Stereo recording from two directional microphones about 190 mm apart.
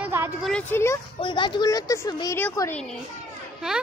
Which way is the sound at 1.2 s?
25° left (ahead or behind).